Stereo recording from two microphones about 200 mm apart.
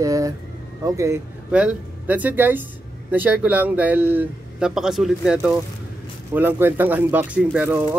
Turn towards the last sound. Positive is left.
turn(degrees=-5)  # may be behind; listen again after turning